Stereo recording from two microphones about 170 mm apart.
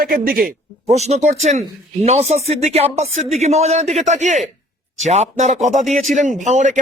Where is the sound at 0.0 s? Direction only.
60° right (ahead or behind).